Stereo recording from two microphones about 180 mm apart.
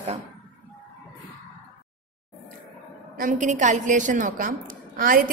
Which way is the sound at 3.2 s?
45° right (ahead or behind).